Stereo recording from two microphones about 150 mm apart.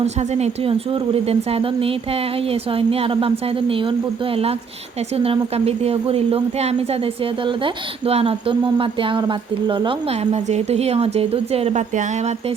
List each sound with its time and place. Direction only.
0.0 s a woman's voice: 45° right (ahead or behind)
10.3 s speech: 45° right (ahead or behind)